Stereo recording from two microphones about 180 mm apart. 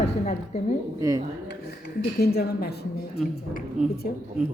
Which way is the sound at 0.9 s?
15° right (ahead or behind).